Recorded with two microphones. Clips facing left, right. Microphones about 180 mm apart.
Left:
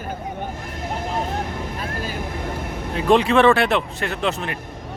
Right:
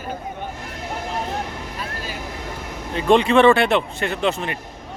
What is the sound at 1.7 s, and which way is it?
Vehicle, 50° left (ahead or behind).